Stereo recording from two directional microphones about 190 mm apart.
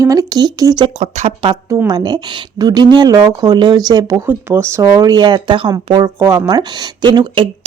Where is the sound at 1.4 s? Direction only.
25° right (ahead or behind).